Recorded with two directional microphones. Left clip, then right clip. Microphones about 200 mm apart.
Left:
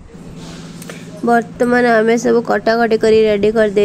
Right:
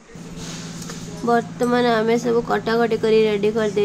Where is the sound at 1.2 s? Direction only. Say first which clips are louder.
Left 5 dB; 25° left (ahead or behind).